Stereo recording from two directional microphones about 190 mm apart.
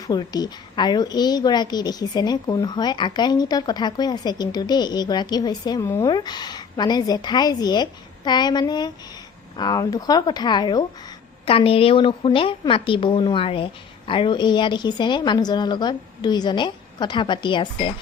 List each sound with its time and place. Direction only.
0.1 s a woman's voice: 20° left (ahead or behind)